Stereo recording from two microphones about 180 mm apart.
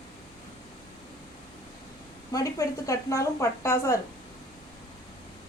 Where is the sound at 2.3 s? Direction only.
15° left (ahead or behind).